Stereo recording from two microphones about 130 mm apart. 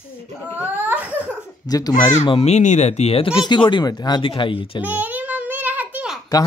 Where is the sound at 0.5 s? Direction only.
10° right (ahead or behind).